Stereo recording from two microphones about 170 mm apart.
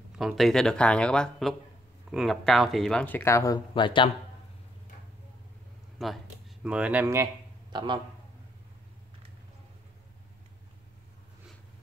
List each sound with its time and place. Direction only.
0.2 s speech: centre (ahead or behind); by 4.1 s 30° left (ahead or behind)
6.0 s speech: centre (ahead or behind)
7.7 s a man's voice: 30° right (ahead or behind)